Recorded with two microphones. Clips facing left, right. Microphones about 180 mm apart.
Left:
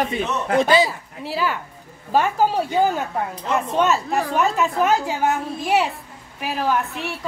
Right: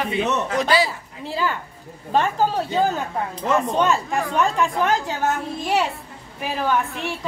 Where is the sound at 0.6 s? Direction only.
20° left (ahead or behind).